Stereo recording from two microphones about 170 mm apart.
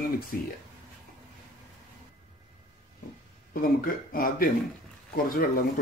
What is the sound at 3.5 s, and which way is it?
Speech, 55° left (ahead or behind).